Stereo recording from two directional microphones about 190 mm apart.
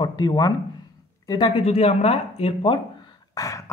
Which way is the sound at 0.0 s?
20° left (ahead or behind).